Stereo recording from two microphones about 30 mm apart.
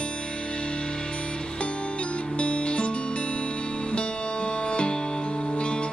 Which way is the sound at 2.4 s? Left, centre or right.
Left.